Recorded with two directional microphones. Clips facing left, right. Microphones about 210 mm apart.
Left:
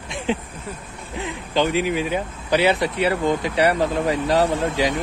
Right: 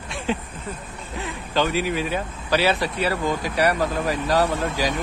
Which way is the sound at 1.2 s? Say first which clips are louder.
Left 2 dB; 15° left (ahead or behind).